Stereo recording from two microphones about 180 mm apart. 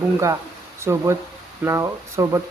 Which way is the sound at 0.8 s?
15° right (ahead or behind).